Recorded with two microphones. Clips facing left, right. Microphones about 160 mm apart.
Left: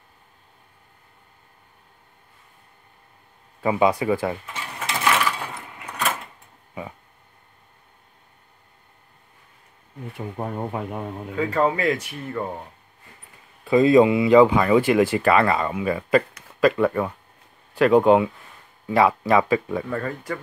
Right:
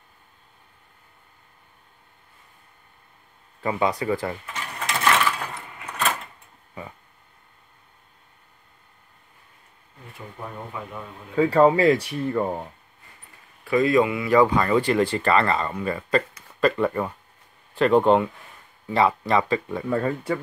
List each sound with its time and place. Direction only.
3.6 s speech: 15° left (ahead or behind)
10.1 s speech: 50° left (ahead or behind)
11.3 s speech: 30° right (ahead or behind)
13.7 s speech: 25° left (ahead or behind); by 19.8 s 5° left (ahead or behind)
19.9 s speech: 25° right (ahead or behind)